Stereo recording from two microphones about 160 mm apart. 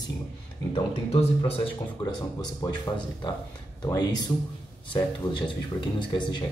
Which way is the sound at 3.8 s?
25° left (ahead or behind).